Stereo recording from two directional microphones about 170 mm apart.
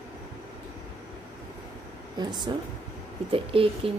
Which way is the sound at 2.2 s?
25° right (ahead or behind).